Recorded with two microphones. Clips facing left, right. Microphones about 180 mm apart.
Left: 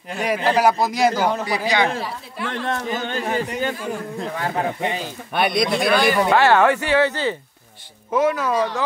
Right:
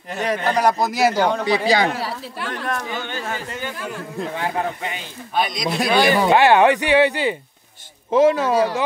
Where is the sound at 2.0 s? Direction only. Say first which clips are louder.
Right 1 dB; 85° right.